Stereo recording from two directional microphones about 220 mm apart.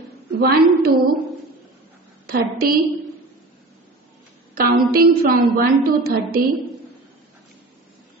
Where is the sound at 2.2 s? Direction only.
45° right (ahead or behind).